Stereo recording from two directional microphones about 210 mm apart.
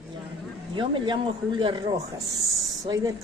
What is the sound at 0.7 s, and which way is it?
Speech, 20° right (ahead or behind).